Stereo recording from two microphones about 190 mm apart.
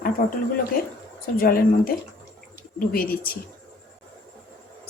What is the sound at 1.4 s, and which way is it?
Speech, 50° left (ahead or behind).